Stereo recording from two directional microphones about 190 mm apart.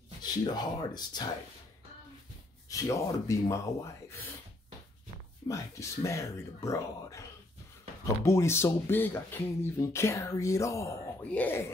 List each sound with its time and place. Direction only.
0.2 s speech: 20° left (ahead or behind)
2.7 s speech: 15° left (ahead or behind)
5.5 s speech: 15° left (ahead or behind)